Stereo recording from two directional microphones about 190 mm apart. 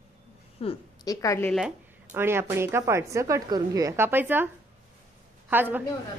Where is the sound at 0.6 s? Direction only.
30° left (ahead or behind).